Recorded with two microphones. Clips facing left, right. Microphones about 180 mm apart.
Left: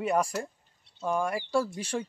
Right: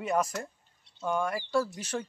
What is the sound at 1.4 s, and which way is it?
Speech, 25° left (ahead or behind).